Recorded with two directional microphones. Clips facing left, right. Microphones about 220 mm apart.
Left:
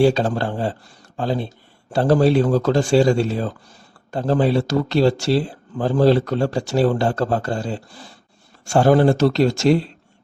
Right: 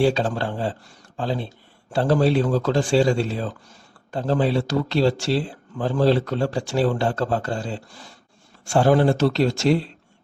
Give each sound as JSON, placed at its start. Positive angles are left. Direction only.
{"t": 0.0, "sound": "a man's voice", "side_deg": 40}